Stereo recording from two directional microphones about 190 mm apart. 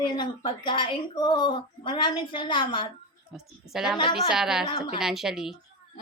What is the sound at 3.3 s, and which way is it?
A woman's voice, centre (ahead or behind).